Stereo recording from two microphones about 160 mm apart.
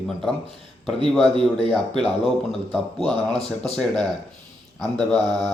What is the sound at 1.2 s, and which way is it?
Speech, 30° right (ahead or behind).